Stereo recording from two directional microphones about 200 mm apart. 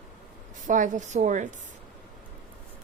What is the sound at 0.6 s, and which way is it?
Speech, 40° right (ahead or behind).